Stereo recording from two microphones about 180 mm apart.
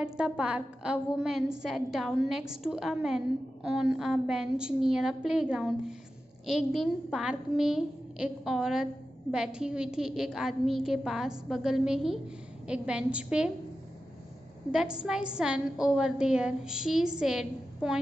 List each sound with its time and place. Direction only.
0.0 s a woman's voice: 5° right (ahead or behind)
14.7 s a woman's voice: 5° right (ahead or behind)